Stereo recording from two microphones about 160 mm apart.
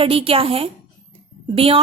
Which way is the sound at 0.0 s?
35° right (ahead or behind).